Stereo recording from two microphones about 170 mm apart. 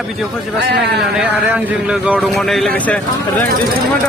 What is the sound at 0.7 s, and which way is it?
Speech, 70° right (ahead or behind).